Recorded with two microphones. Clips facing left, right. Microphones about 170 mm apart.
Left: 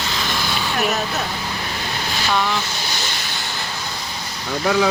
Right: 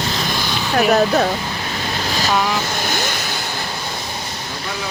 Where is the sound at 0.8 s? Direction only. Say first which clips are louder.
Right 10 dB; 60° right (ahead or behind).